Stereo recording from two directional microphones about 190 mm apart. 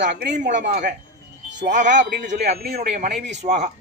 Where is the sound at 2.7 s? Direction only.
40° right (ahead or behind).